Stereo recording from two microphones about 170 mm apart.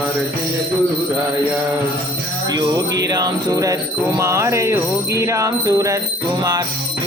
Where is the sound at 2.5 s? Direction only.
20° right (ahead or behind).